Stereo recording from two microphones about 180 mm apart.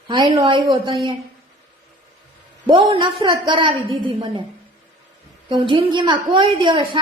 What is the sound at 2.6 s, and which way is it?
A woman's voice, 25° right (ahead or behind).